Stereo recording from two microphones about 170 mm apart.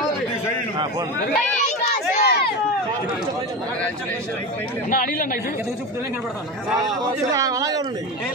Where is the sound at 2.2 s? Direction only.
75° left (ahead or behind).